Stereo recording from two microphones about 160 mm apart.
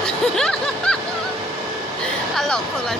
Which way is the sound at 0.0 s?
5° left (ahead or behind).